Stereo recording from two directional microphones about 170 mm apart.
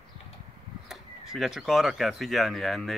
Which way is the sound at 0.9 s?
Centre (ahead or behind).